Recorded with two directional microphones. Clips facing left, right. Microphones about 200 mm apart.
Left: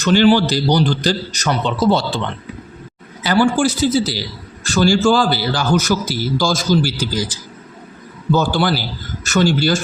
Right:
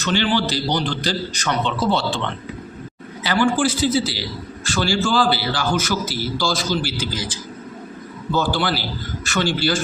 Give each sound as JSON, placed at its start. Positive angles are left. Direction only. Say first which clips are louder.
{"t": 0.0, "sound": "a man's voice", "louder": "left 8 dB", "side_deg": 45}
{"t": 3.2, "sound": "a man's voice", "louder": "left 4 dB", "side_deg": 45}